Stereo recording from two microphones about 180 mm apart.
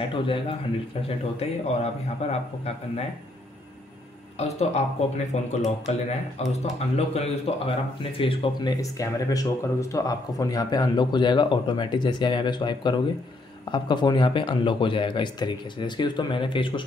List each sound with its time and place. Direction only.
0.1 s speech: 30° left (ahead or behind)
4.4 s speech: 35° left (ahead or behind)